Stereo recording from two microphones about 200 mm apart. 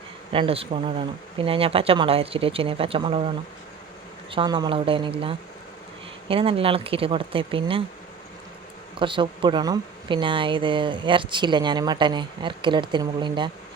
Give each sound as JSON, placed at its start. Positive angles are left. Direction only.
{"t": 0.3, "sound": "speech", "side_deg": -30}
{"t": 9.0, "sound": "speech", "side_deg": -25}